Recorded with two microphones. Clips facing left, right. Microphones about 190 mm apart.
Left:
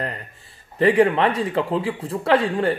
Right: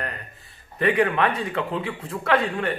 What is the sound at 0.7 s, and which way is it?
Speech, 30° left (ahead or behind).